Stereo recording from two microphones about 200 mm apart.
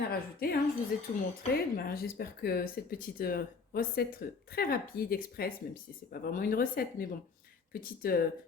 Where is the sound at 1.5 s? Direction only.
50° left (ahead or behind).